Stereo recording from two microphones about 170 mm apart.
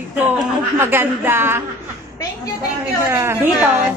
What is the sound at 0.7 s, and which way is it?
Speech, 15° right (ahead or behind).